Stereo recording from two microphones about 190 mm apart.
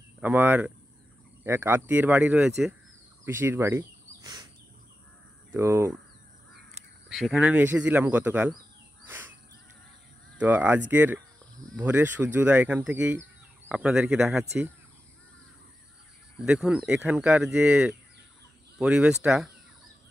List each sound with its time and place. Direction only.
0.2 s speech: 10° right (ahead or behind)
3.3 s fowl: 10° right (ahead or behind)
5.5 s speech: 15° right (ahead or behind)
7.1 s speech: centre (ahead or behind)
10.4 s speech: 10° right (ahead or behind)
16.3 s speech: 5° right (ahead or behind)